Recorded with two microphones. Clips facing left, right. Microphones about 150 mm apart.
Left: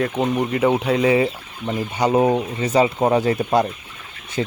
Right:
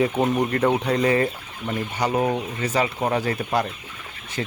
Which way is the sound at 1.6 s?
25° left (ahead or behind).